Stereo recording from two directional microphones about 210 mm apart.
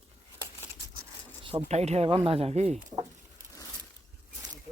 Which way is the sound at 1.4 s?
30° right (ahead or behind).